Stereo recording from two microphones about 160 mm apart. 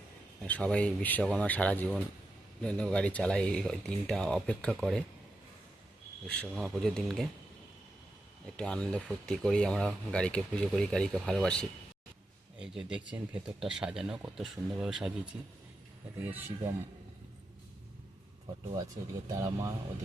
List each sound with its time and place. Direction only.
0.4 s speech: 10° left (ahead or behind)
6.2 s speech: 5° left (ahead or behind)
8.5 s speech: 5° left (ahead or behind)
12.5 s speech: 5° right (ahead or behind)
16.2 s speech: 10° right (ahead or behind)
19.4 s speech: 20° right (ahead or behind)